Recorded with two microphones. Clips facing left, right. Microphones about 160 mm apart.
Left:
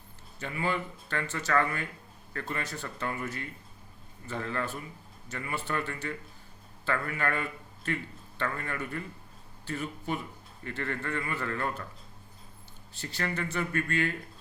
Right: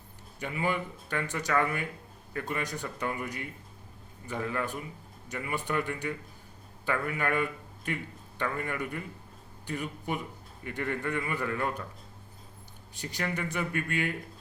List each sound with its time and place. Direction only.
0.3 s speech: 15° right (ahead or behind)
12.9 s speech: 15° right (ahead or behind)